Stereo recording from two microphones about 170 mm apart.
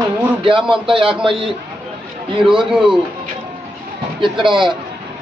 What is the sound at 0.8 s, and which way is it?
Speech, 30° right (ahead or behind).